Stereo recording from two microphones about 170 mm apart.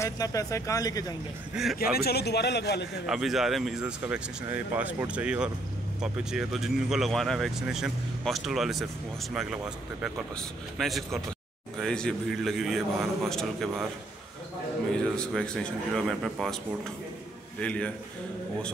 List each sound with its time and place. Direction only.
0.0 s speech: 20° left (ahead or behind)
1.5 s speech: centre (ahead or behind)
2.0 s a man's voice: 70° left (ahead or behind)
3.1 s speech: centre (ahead or behind)
10.8 s speech: centre (ahead or behind)
15.1 s speech: 5° left (ahead or behind)
17.6 s a man's voice: 5° left (ahead or behind)